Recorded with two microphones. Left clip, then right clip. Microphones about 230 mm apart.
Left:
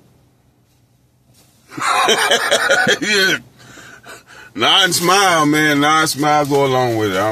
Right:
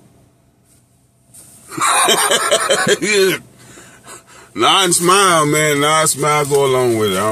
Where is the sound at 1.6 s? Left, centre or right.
Centre.